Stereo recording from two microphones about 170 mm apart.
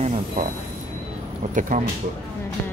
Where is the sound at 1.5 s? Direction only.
50° right (ahead or behind).